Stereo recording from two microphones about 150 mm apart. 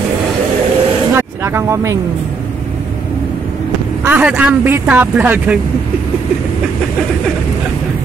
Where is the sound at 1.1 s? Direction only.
15° right (ahead or behind).